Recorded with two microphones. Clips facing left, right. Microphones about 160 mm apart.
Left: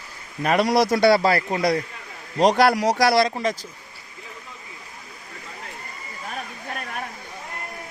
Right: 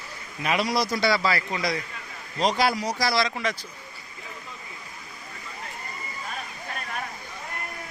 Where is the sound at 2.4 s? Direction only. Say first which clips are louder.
Left 7 dB; 65° left (ahead or behind).